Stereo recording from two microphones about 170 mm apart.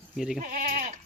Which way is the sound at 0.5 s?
60° right (ahead or behind).